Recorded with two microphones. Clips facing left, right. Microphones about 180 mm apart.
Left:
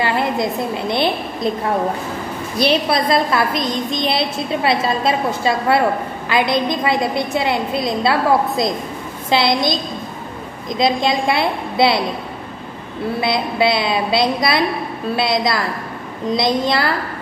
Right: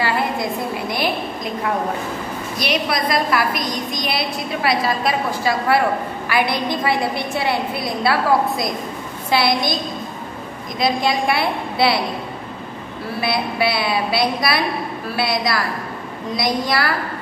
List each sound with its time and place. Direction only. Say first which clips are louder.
0.0 s a woman's voice: left 2 dB; 20° left (ahead or behind)
10.8 s a woman's voice: left 2 dB; 20° left (ahead or behind)
13.2 s a woman's voice: left 2 dB; 20° left (ahead or behind)